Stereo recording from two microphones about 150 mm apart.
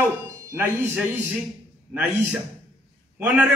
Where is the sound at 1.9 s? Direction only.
10° right (ahead or behind).